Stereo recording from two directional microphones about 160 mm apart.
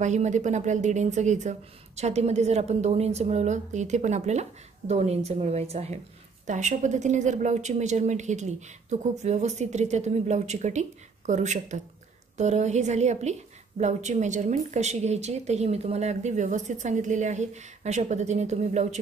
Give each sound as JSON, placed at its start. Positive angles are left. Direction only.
{"t": 0.0, "sound": "a woman's voice", "side_deg": -45}